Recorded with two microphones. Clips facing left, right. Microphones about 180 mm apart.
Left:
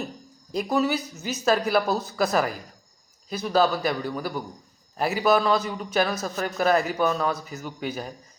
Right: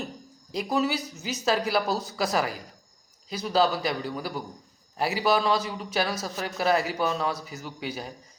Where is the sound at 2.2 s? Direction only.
50° left (ahead or behind).